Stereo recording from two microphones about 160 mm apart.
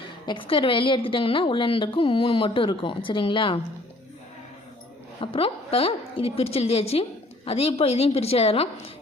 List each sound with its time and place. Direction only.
0.3 s a woman's voice: 35° left (ahead or behind)
5.2 s a woman's voice: 35° left (ahead or behind)